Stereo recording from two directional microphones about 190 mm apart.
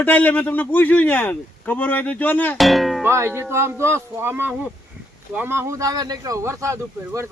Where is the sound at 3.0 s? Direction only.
15° right (ahead or behind).